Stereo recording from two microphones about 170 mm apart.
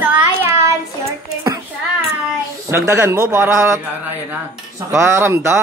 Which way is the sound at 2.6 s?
15° right (ahead or behind).